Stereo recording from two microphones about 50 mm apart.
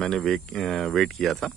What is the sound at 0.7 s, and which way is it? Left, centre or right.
Speech, centre.